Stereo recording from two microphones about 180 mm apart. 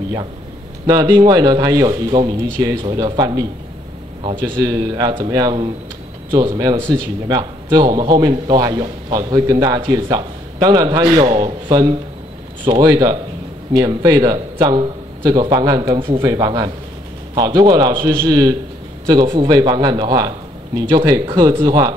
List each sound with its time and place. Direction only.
0.8 s a man's voice: 20° right (ahead or behind)
4.6 s a man's voice: 20° right (ahead or behind)